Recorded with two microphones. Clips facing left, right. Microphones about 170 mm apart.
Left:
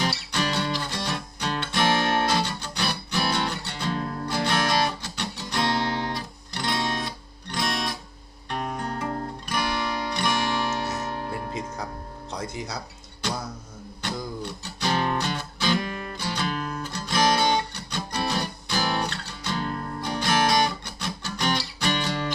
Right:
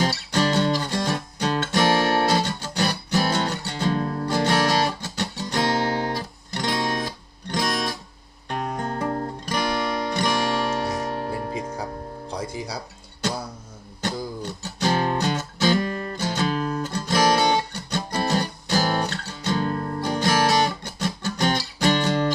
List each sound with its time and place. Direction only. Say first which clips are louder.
0.0 s music: right 5 dB; 45° right (ahead or behind)
14.0 s music: right 3 dB; 45° right (ahead or behind)
15.2 s guitar: right 5 dB; 45° right (ahead or behind)